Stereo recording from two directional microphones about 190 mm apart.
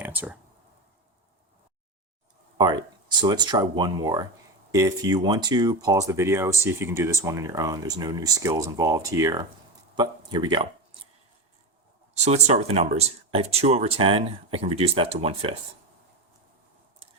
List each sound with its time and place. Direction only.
0.0 s a sound: 10° right (ahead or behind)
2.6 s speech: 20° right (ahead or behind)
12.1 s speech: 35° right (ahead or behind)